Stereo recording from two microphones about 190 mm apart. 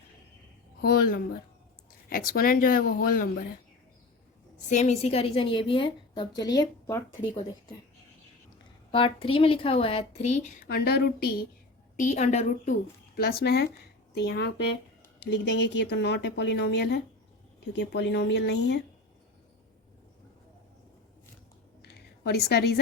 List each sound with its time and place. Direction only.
0.8 s speech: 50° left (ahead or behind)
4.7 s a woman's voice: 35° left (ahead or behind)
8.9 s a woman's voice: 30° left (ahead or behind)
10.7 s speech: 55° left (ahead or behind)
11.9 s a woman's voice: 40° left (ahead or behind)
13.1 s a woman's voice: 55° left (ahead or behind)
21.8 s a sound: 60° left (ahead or behind)